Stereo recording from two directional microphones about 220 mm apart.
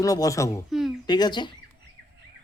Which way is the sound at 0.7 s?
Centre (ahead or behind).